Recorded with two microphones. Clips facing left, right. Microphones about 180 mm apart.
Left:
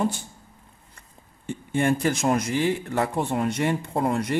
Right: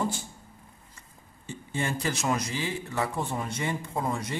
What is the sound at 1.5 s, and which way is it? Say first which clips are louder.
A man's voice: left 9 dB; 55° left (ahead or behind).